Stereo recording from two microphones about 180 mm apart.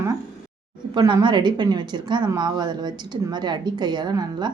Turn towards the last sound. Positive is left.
turn(degrees=-20)  # may be behind; listen again after turning